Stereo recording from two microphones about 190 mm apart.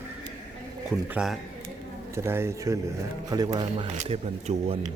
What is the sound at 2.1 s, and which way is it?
A man's voice, 15° right (ahead or behind).